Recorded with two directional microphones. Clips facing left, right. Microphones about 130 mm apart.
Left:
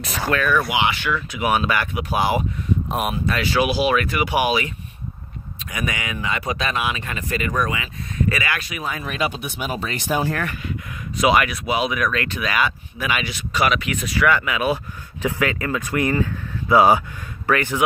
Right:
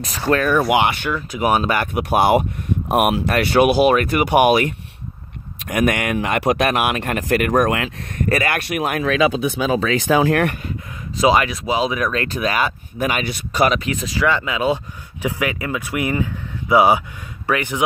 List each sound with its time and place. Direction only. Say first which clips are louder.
0.0 s speech: right 4 dB; 35° right (ahead or behind)
0.7 s speech: right 4 dB; 55° right (ahead or behind); by 9.1 s 75° right (ahead or behind)
10.2 s speech: right 8 dB; 70° right (ahead or behind)
11.1 s speech: right 2 dB; 30° right (ahead or behind)
15.2 s speech: even; 15° right (ahead or behind)